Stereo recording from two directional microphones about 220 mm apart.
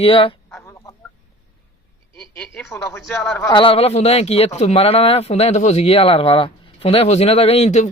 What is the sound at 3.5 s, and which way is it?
Speech, 25° left (ahead or behind).